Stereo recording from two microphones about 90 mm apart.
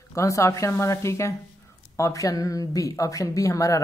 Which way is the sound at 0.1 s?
35° left (ahead or behind).